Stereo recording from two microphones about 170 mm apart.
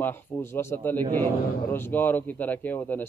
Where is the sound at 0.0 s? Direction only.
15° left (ahead or behind).